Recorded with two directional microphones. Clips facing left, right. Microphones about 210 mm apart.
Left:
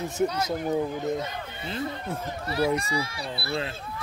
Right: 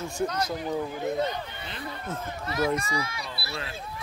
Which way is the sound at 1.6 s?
25° left (ahead or behind).